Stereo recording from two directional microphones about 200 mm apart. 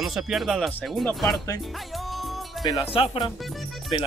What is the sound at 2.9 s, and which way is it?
Speech, 25° left (ahead or behind).